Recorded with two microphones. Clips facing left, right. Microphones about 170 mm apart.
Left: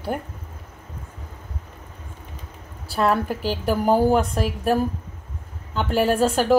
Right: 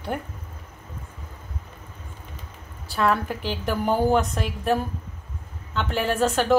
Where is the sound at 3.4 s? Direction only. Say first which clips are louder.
Left 4 dB; 40° left (ahead or behind).